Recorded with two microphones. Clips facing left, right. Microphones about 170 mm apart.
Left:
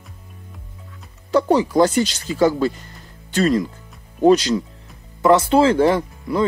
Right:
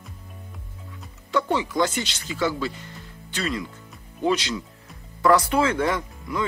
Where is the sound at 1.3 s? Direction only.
35° left (ahead or behind).